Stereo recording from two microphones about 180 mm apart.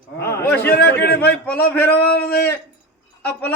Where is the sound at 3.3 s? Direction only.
10° left (ahead or behind).